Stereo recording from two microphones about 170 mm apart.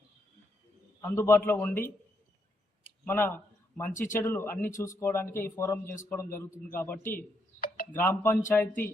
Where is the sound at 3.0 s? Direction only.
10° left (ahead or behind).